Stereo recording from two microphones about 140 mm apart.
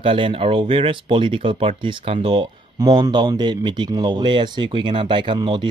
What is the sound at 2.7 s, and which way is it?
Speech, 30° right (ahead or behind).